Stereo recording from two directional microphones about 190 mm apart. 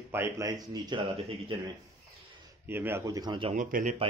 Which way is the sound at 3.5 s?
40° right (ahead or behind).